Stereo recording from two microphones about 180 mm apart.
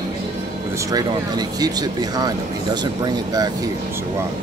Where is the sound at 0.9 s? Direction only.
20° right (ahead or behind).